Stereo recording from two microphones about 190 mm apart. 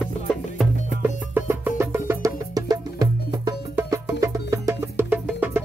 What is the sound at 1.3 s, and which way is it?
Music, 10° right (ahead or behind).